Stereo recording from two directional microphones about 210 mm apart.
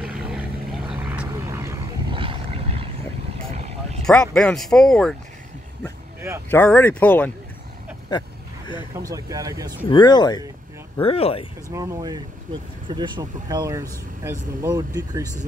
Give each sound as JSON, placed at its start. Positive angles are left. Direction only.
{"t": 0.3, "sound": "vehicle", "side_deg": -5}
{"t": 2.1, "sound": "vehicle", "side_deg": -25}
{"t": 4.0, "sound": "speech", "side_deg": 5}
{"t": 6.5, "sound": "speech", "side_deg": 10}
{"t": 8.9, "sound": "speech", "side_deg": -15}
{"t": 9.8, "sound": "speech", "side_deg": 20}
{"t": 11.7, "sound": "speech", "side_deg": -15}